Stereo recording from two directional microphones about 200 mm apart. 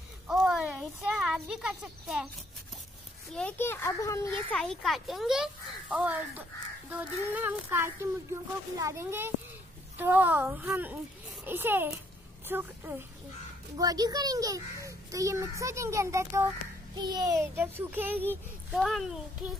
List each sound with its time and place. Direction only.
0.3 s a child's voice: centre (ahead or behind)
3.3 s a child's voice: 10° left (ahead or behind)
4.6 s a child's voice: centre (ahead or behind)